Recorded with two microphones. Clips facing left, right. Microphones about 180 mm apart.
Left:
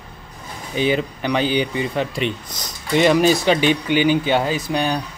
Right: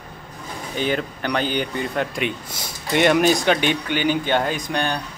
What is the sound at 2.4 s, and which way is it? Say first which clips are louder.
Speech: even; 25° right (ahead or behind).